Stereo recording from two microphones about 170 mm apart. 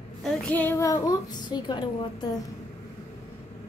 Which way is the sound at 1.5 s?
25° left (ahead or behind).